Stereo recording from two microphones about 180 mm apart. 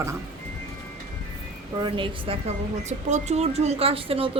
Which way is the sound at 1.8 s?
30° right (ahead or behind).